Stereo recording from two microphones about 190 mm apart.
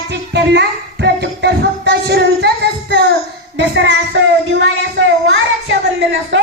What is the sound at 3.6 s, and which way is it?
Music, 65° right (ahead or behind).